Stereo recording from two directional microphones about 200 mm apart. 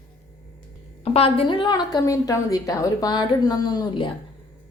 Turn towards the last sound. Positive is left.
turn(degrees=20)  # may be behind; listen again after turning